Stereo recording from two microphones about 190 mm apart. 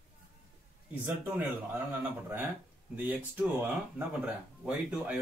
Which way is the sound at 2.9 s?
10° right (ahead or behind).